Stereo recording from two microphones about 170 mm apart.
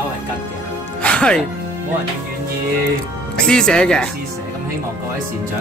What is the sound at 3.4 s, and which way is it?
Speech, 5° left (ahead or behind).